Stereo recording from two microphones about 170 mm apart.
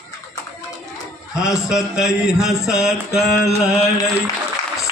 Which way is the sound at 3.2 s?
70° left (ahead or behind).